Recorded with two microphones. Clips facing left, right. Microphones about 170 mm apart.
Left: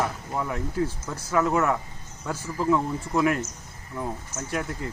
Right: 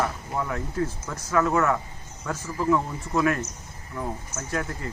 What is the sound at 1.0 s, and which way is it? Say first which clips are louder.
Speech: right 2 dB; 20° left (ahead or behind).